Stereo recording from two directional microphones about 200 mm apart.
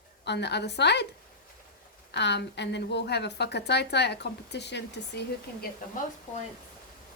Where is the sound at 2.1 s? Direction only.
60° left (ahead or behind).